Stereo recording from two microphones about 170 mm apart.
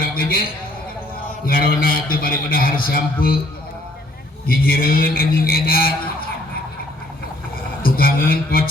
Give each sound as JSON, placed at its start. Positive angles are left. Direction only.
{"t": 0.0, "sound": "a sound", "side_deg": 60}
{"t": 1.3, "sound": "a man's voice", "side_deg": 60}
{"t": 4.4, "sound": "a man's voice", "side_deg": 60}
{"t": 7.8, "sound": "a man's voice", "side_deg": 60}